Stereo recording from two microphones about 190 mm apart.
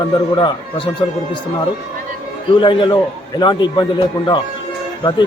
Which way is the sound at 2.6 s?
25° left (ahead or behind).